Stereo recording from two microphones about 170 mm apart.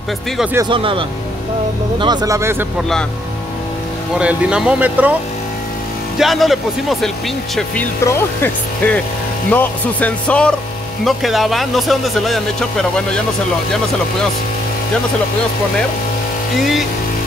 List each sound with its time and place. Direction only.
0.7 s speech: 30° right (ahead or behind)
4.2 s speech: 5° right (ahead or behind)
6.1 s speech: centre (ahead or behind)
8.0 s speech: 15° left (ahead or behind)